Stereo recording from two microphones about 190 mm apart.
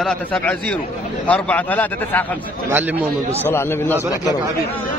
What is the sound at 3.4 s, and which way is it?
Speech, 10° left (ahead or behind).